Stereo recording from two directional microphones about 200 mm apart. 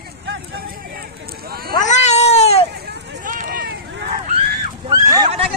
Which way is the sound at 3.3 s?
40° right (ahead or behind).